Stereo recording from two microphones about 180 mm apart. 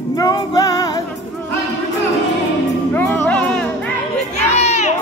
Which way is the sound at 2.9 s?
10° left (ahead or behind).